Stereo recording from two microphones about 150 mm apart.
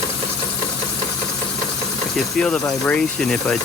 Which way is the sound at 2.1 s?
5° left (ahead or behind).